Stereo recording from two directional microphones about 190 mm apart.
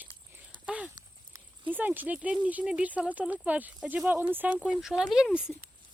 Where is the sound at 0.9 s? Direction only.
20° right (ahead or behind).